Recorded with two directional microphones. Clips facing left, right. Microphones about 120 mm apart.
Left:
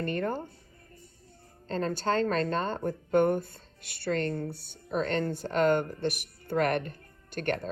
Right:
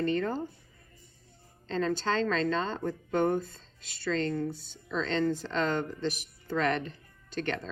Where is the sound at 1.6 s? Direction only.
45° left (ahead or behind).